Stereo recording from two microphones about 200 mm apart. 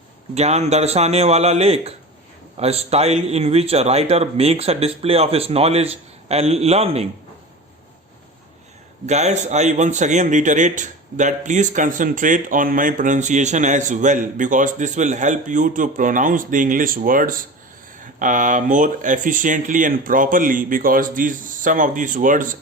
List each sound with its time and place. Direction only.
0.3 s a man's voice: 35° right (ahead or behind)
9.0 s a man's voice: 35° right (ahead or behind)